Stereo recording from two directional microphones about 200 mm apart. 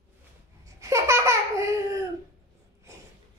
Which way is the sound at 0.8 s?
15° right (ahead or behind).